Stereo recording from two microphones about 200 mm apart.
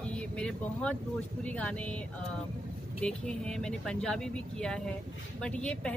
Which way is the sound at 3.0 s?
5° left (ahead or behind).